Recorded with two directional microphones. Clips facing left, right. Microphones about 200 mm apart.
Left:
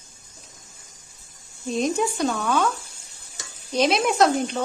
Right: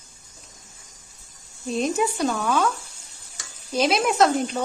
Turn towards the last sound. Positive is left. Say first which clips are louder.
# even
turn(degrees=0)  # may be behind; listen again after turning